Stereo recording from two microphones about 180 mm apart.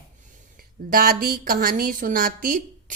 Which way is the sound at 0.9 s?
55° right (ahead or behind).